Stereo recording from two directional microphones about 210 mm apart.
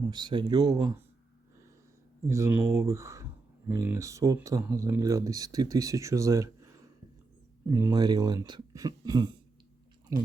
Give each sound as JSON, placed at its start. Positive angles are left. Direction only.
{"t": 0.1, "sound": "speech", "side_deg": -20}
{"t": 2.2, "sound": "speech", "side_deg": -15}